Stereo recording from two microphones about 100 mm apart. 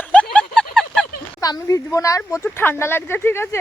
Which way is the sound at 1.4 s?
35° left (ahead or behind).